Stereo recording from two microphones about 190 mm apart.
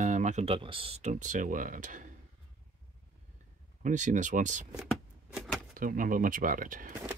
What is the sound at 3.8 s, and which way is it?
Speech, 40° right (ahead or behind).